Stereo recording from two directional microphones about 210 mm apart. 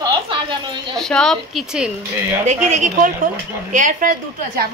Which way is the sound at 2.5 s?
35° right (ahead or behind).